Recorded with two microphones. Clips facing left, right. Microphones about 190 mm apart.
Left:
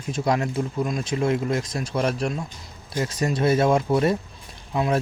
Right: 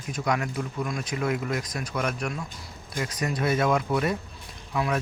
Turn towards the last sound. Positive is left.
turn(degrees=25)  # may be behind; listen again after turning